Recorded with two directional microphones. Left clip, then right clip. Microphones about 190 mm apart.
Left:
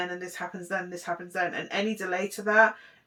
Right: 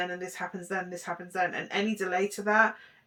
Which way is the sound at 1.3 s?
20° right (ahead or behind).